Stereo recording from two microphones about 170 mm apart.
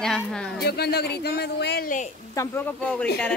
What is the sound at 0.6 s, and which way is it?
Speech, 70° left (ahead or behind).